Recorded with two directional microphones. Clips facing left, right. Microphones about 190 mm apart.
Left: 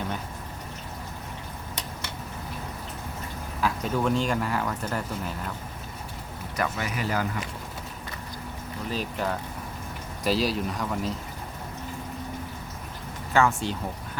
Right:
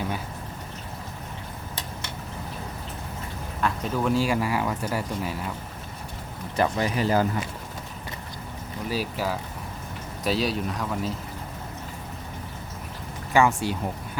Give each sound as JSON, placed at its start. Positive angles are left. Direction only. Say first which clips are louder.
{"t": 3.6, "sound": "speech", "louder": "even", "side_deg": -5}
{"t": 6.6, "sound": "speech", "louder": "right 6 dB", "side_deg": -30}
{"t": 8.9, "sound": "speech", "louder": "right 2 dB", "side_deg": -5}
{"t": 13.3, "sound": "speech", "louder": "right 2 dB", "side_deg": -15}